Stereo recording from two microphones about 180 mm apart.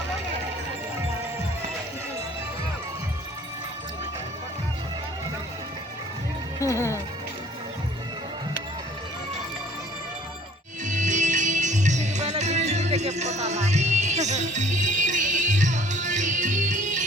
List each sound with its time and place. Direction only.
6.6 s music: 15° left (ahead or behind)
10.8 s music: 45° right (ahead or behind)